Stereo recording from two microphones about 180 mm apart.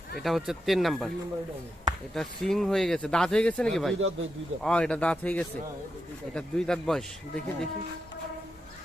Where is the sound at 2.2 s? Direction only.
5° left (ahead or behind).